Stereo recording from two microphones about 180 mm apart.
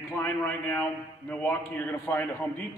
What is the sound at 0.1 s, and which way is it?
A man's voice, 10° left (ahead or behind).